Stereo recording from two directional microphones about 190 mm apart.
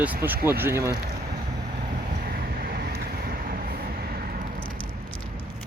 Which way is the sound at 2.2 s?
50° right (ahead or behind).